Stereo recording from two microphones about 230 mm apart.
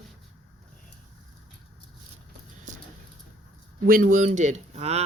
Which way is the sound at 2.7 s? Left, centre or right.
Right.